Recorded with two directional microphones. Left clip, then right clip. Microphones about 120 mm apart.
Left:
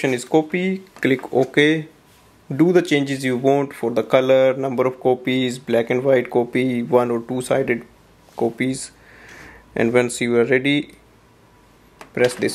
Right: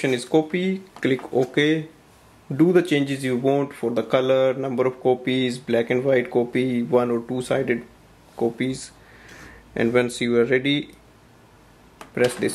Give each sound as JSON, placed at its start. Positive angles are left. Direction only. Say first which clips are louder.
{"t": 0.0, "sound": "speech", "louder": "left 2 dB", "side_deg": 30}
{"t": 8.4, "sound": "a sound", "louder": "left 3 dB", "side_deg": 35}
{"t": 9.8, "sound": "speech", "louder": "left 3 dB", "side_deg": 30}
{"t": 12.1, "sound": "speech", "louder": "left 3 dB", "side_deg": 30}